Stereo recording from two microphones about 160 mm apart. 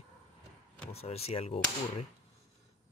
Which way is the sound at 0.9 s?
40° left (ahead or behind).